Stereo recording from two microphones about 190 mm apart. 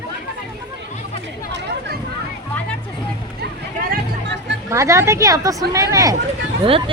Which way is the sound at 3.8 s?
65° right (ahead or behind).